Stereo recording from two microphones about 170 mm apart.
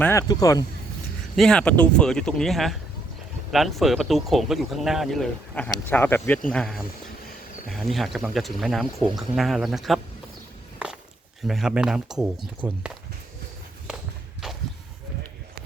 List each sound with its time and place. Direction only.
0.0 s speech: 15° left (ahead or behind)
1.4 s speech: 5° left (ahead or behind)
11.4 s speech: 5° right (ahead or behind)
14.4 s a sound: 5° right (ahead or behind)